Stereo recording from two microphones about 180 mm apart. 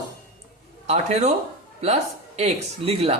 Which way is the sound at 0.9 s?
40° right (ahead or behind).